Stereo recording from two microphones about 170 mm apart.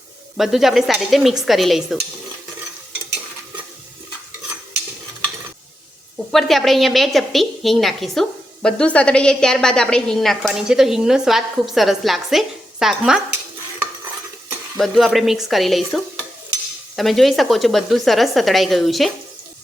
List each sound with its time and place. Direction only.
0.3 s a woman's voice: centre (ahead or behind)
6.3 s a woman's voice: centre (ahead or behind)
14.8 s a woman's voice: centre (ahead or behind)